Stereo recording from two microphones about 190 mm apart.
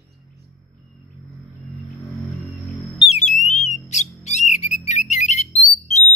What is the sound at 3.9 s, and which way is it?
Bird, 40° left (ahead or behind).